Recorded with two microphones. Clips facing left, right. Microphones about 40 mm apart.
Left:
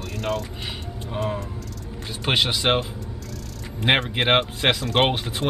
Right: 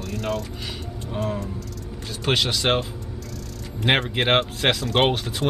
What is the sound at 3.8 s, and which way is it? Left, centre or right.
Speech, centre.